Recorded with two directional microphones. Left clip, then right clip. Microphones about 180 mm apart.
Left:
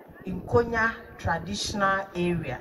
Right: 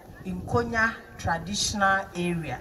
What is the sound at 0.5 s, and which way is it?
A woman's voice, 25° left (ahead or behind).